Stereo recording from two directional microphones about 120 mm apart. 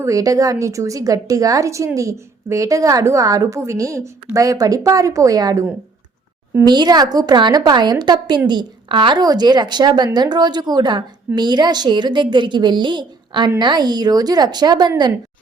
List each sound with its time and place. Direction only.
0.0 s a woman's voice: 30° right (ahead or behind)
6.7 s a woman's voice: 35° right (ahead or behind)